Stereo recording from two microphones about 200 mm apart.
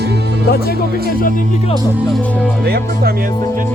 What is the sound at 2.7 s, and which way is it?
Speech, 50° right (ahead or behind).